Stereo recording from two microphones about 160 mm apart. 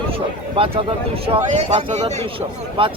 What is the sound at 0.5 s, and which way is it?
Speech, 35° right (ahead or behind).